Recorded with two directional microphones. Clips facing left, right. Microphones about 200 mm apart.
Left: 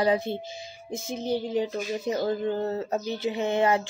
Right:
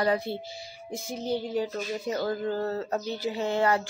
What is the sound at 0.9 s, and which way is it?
Music, 20° left (ahead or behind).